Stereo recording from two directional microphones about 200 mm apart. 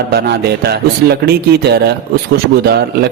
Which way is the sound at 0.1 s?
50° right (ahead or behind).